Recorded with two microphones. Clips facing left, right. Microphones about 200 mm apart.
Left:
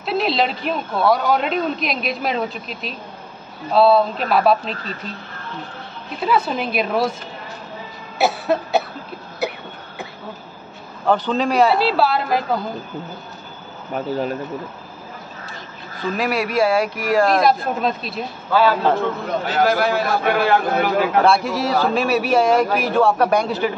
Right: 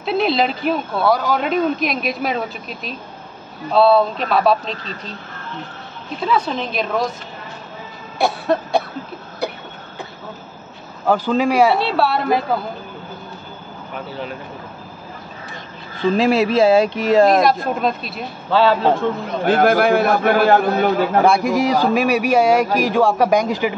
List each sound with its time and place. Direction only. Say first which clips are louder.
0.0 s speech: right 2 dB; centre (ahead or behind)
6.2 s a woman's voice: even; 5° left (ahead or behind)
8.2 s cough: even; 5° left (ahead or behind)
11.1 s a man's voice: right 2 dB; 10° right (ahead or behind)
11.8 s speech: even; centre (ahead or behind)
13.9 s speech: left 7 dB; 40° left (ahead or behind)
16.0 s speech: right 6 dB; 25° right (ahead or behind)
17.4 s speech: right 1 dB; centre (ahead or behind)
18.5 s speech: right 2 dB; 25° right (ahead or behind)
19.4 s a man's voice: right 5 dB; 55° right (ahead or behind)
20.2 s a man's voice: right 3 dB; 40° right (ahead or behind)
21.2 s a man's voice: right 3 dB; 15° right (ahead or behind)